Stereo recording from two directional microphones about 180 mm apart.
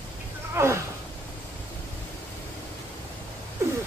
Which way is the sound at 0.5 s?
15° right (ahead or behind).